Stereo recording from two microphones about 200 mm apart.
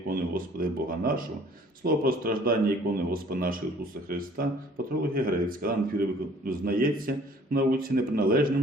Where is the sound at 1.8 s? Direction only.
45° right (ahead or behind).